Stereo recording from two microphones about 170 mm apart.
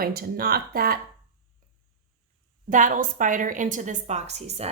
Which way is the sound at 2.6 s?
50° right (ahead or behind).